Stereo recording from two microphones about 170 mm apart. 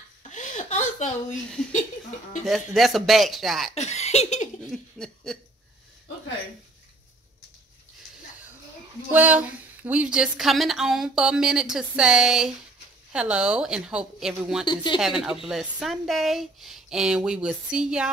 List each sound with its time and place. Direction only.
0.3 s a sound: 45° left (ahead or behind)
1.7 s speech: 45° left (ahead or behind)
2.4 s speech: centre (ahead or behind)
3.7 s chuckle: 40° left (ahead or behind)
4.6 s a sound: 5° left (ahead or behind)
9.1 s speech: 10° right (ahead or behind)
14.7 s speech: 30° left (ahead or behind)
15.0 s speech: centre (ahead or behind)